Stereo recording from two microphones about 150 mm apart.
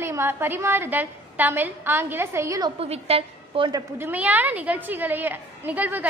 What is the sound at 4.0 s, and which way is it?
A woman's voice, 10° right (ahead or behind).